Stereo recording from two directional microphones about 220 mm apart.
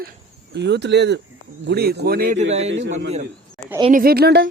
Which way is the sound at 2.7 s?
55° right (ahead or behind).